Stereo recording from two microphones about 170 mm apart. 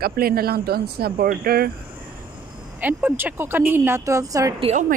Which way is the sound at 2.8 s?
10° right (ahead or behind).